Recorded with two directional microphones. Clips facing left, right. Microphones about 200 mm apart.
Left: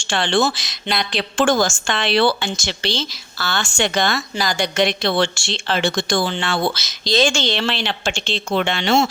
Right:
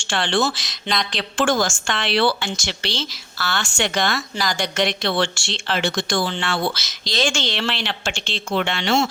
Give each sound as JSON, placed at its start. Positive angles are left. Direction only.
{"t": 0.1, "sound": "speech", "side_deg": 20}
{"t": 0.7, "sound": "speech", "side_deg": 5}
{"t": 1.1, "sound": "a woman's voice", "side_deg": 20}
{"t": 5.3, "sound": "speech", "side_deg": -15}
{"t": 5.7, "sound": "a woman's voice", "side_deg": 25}